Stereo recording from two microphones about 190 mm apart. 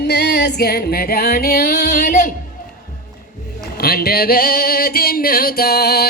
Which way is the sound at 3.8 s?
55° left (ahead or behind).